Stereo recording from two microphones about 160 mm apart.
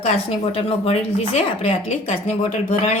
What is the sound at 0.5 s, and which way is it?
A woman's voice, 40° left (ahead or behind).